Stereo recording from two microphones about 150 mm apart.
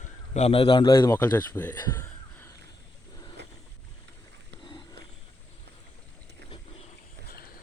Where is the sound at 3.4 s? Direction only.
90° right.